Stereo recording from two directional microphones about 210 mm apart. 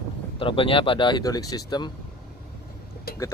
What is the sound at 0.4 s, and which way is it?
Speech, 25° left (ahead or behind).